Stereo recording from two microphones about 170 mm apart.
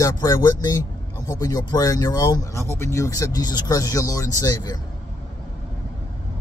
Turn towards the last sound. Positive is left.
turn(degrees=20)  # may be behind; listen again after turning